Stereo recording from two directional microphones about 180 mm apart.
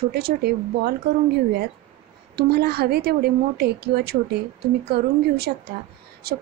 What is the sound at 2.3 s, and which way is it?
A woman's voice, 60° right (ahead or behind).